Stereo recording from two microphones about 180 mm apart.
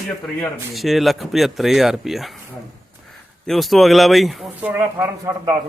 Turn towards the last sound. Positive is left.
turn(degrees=-15)  # may be behind; listen again after turning